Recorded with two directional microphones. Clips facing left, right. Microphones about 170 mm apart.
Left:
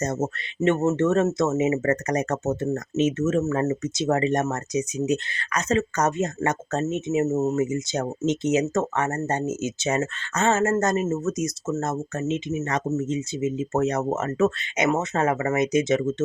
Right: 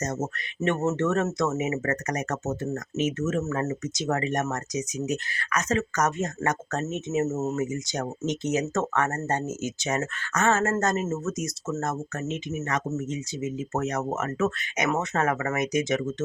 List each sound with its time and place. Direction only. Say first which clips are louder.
0.0 s speech: left 4 dB; 30° left (ahead or behind)